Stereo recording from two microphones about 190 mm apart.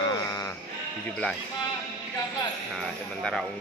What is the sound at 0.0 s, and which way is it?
Sheep, 20° left (ahead or behind).